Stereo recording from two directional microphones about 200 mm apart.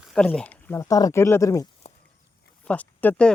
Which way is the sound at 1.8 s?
30° left (ahead or behind).